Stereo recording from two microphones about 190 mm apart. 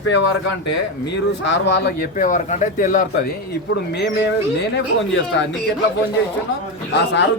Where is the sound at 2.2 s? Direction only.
40° left (ahead or behind).